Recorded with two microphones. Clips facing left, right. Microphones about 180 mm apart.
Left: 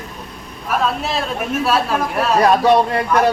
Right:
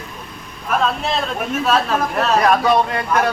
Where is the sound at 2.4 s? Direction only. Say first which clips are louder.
Left 4 dB; 30° left (ahead or behind).